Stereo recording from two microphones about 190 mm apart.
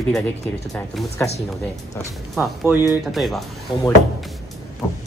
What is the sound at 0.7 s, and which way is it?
Speech, 10° left (ahead or behind).